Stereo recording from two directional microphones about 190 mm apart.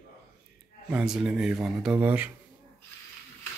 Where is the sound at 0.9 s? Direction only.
5° right (ahead or behind).